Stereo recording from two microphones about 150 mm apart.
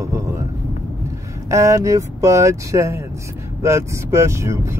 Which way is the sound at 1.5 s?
20° right (ahead or behind).